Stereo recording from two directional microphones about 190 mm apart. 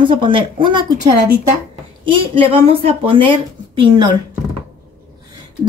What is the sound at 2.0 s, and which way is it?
Speech, 30° right (ahead or behind).